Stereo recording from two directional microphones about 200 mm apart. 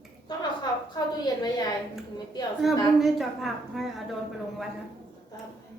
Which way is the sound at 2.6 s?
Centre (ahead or behind).